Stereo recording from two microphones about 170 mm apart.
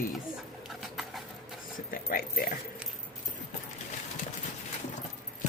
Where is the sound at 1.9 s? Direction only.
60° left (ahead or behind).